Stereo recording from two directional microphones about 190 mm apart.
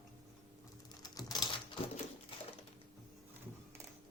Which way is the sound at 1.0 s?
20° left (ahead or behind).